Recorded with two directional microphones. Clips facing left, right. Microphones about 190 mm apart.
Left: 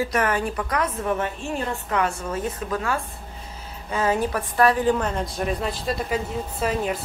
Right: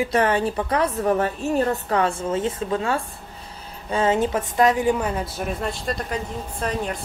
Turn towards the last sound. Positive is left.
turn(degrees=5)  # may be behind; listen again after turning